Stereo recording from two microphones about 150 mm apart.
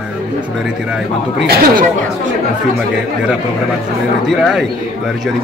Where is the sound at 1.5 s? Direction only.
85° right.